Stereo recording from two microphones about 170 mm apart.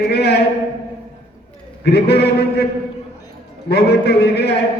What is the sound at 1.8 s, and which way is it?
Speech, 75° left (ahead or behind).